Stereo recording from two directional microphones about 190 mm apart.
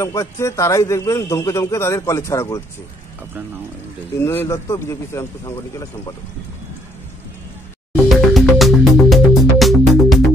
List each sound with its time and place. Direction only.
0.0 s a man's voice: 15° left (ahead or behind)
4.2 s a man's voice: 10° left (ahead or behind)
7.9 s music: centre (ahead or behind)